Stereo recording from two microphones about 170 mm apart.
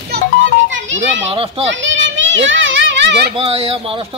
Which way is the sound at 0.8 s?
90° right.